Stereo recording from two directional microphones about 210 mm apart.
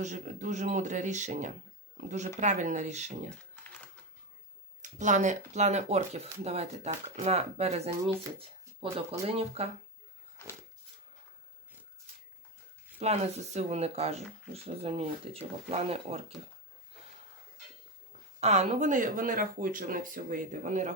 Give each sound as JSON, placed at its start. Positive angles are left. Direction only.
{"t": 0.0, "sound": "speech", "side_deg": -35}
{"t": 4.8, "sound": "speech", "side_deg": -35}
{"t": 8.4, "sound": "shuffling cards", "side_deg": -25}
{"t": 9.2, "sound": "speech", "side_deg": -30}
{"t": 13.0, "sound": "speech", "side_deg": -30}
{"t": 18.3, "sound": "speech", "side_deg": -30}